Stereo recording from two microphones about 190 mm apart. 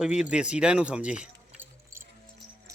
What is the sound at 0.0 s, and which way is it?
Speech, 5° right (ahead or behind).